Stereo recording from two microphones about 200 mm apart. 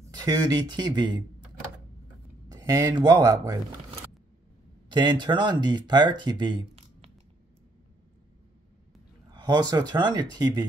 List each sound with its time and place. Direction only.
0.1 s speech: 20° right (ahead or behind)
2.5 s speech: 20° right (ahead or behind)
4.8 s speech: 25° right (ahead or behind)
9.3 s speech: 20° right (ahead or behind)